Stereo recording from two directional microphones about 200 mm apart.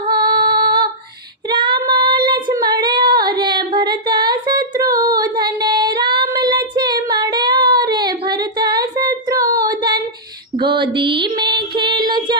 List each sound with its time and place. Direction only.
0.1 s female singing: 20° right (ahead or behind)
10.6 s music: 25° right (ahead or behind)